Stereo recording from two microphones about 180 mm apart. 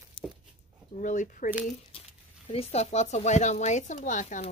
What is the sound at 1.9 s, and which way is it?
Speech, 30° left (ahead or behind).